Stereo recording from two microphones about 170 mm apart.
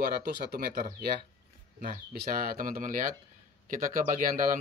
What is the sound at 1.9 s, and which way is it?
Speech, 55° right (ahead or behind).